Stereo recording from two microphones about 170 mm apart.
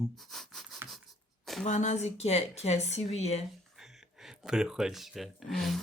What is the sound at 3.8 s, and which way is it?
Speech, centre (ahead or behind).